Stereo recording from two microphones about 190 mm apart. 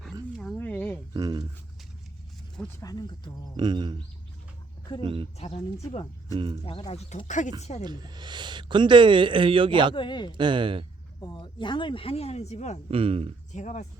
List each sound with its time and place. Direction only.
0.3 s a sound: 5° left (ahead or behind)
1.1 s a sound: 20° right (ahead or behind)
2.8 s speech: 20° left (ahead or behind)
3.6 s a man's voice: 25° right (ahead or behind)
5.0 s a man's voice: 25° right (ahead or behind)
5.4 s speech: 35° left (ahead or behind)
6.3 s a man's voice: 25° right (ahead or behind)
6.7 s speech: 30° left (ahead or behind)
7.9 s a man's voice: 20° right (ahead or behind)
9.9 s speech: 25° left (ahead or behind)
10.3 s a man's voice: 25° right (ahead or behind)
11.2 s speech: 20° left (ahead or behind)
12.9 s speech: 30° right (ahead or behind)
13.5 s speech: 40° left (ahead or behind)